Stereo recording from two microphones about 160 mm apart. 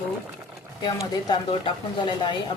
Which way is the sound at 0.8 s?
25° left (ahead or behind).